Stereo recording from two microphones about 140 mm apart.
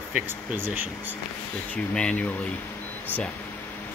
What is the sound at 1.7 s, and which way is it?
Speech, 5° left (ahead or behind).